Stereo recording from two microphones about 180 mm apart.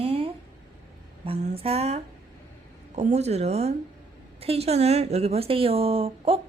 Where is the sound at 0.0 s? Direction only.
30° right (ahead or behind).